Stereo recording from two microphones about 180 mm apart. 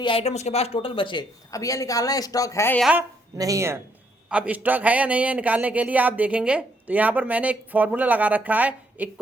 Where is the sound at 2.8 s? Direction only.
5° right (ahead or behind).